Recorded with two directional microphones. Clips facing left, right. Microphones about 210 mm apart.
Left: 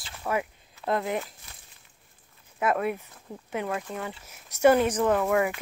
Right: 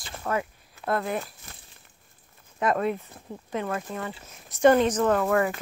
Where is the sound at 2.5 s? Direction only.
5° left (ahead or behind).